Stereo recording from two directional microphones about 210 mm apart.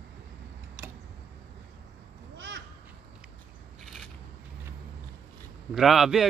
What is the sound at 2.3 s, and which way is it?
Crow, 60° right (ahead or behind).